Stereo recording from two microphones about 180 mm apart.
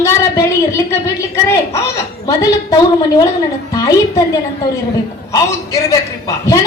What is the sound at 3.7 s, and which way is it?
Speech, 20° left (ahead or behind).